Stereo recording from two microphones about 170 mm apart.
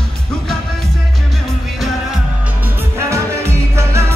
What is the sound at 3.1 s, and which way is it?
Music, 15° right (ahead or behind).